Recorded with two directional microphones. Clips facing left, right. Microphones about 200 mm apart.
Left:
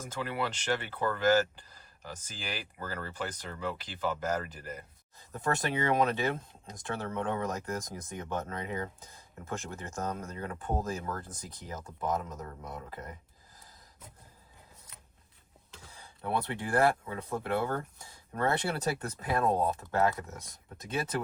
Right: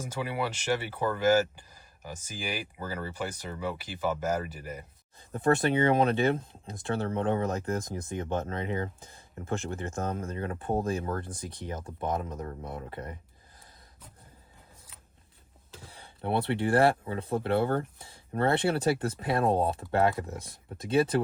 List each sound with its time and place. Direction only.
0.0 s speech: 10° right (ahead or behind)
5.3 s speech: 30° right (ahead or behind)
15.7 s speech: 35° right (ahead or behind)
18.9 s speech: 30° right (ahead or behind)